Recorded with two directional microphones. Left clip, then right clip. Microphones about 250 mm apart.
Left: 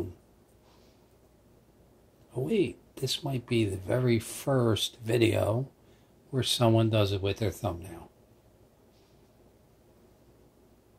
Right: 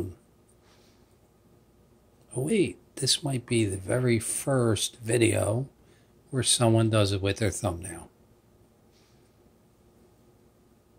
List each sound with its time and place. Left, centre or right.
2.3 s speech: right